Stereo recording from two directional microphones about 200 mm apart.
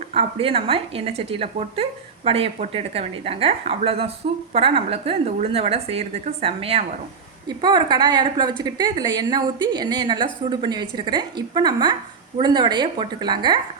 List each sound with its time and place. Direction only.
0.1 s speech: 30° right (ahead or behind)